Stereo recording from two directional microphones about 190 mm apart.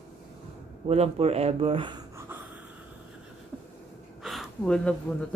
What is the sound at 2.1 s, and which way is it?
Snort, 10° right (ahead or behind).